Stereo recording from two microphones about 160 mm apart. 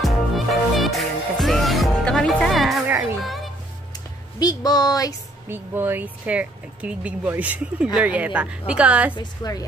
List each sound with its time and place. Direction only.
0.0 s music: centre (ahead or behind)
4.4 s speech: 25° left (ahead or behind)
5.5 s speech: 15° right (ahead or behind)
9.1 s a woman's voice: 25° left (ahead or behind)